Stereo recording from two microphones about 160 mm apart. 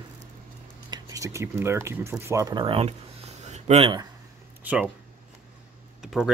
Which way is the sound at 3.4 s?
45° right (ahead or behind).